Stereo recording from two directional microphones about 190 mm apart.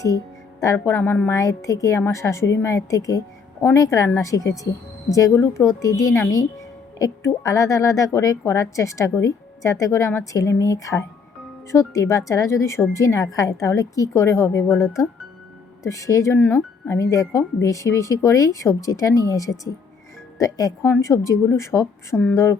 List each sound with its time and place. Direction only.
0.6 s a woman's voice: 15° left (ahead or behind)
15.9 s a woman's voice: 15° left (ahead or behind)